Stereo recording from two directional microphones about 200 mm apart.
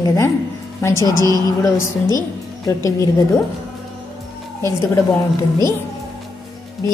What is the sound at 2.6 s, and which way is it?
Speech, 15° left (ahead or behind).